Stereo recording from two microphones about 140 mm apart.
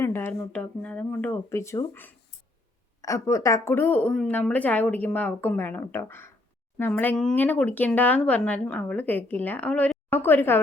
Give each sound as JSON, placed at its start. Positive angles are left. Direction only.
{"t": 0.0, "sound": "a woman's voice", "side_deg": 15}